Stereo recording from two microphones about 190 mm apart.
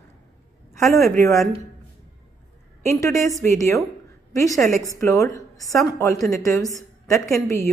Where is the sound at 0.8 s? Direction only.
15° left (ahead or behind).